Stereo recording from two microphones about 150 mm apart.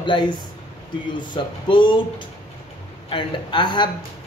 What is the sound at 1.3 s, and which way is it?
Speech, 30° left (ahead or behind).